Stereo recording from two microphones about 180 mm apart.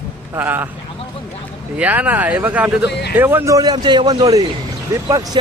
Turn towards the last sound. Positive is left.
turn(degrees=-20)  # may be behind; listen again after turning